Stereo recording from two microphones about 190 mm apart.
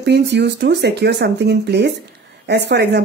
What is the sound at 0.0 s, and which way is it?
Speech, 60° right (ahead or behind).